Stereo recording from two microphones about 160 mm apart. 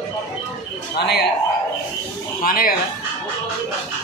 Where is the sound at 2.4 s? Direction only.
65° left (ahead or behind).